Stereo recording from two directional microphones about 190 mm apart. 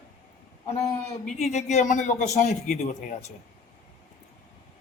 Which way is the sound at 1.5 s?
40° left (ahead or behind).